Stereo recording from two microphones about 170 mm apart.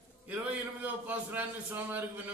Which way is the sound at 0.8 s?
10° right (ahead or behind).